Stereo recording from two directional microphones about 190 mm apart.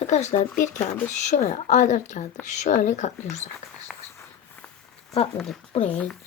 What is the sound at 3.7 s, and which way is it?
Walk, 5° left (ahead or behind).